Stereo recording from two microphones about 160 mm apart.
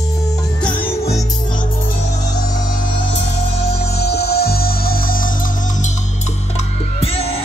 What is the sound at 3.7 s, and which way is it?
Music, 80° left.